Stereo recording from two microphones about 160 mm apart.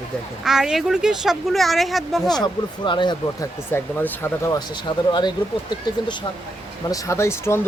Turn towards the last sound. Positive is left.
turn(degrees=15)  # may be behind; listen again after turning